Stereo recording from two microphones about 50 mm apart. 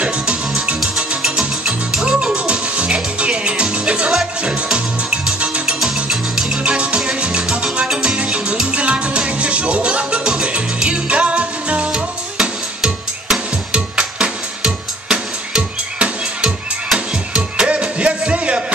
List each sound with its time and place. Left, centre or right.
0.9 s music: centre
2.3 s music: right
5.9 s music: centre
6.7 s music: right